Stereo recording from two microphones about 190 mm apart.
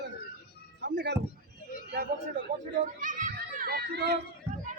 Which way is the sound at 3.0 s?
45° right (ahead or behind).